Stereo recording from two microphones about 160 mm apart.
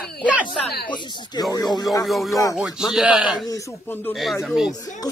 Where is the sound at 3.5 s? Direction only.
15° left (ahead or behind).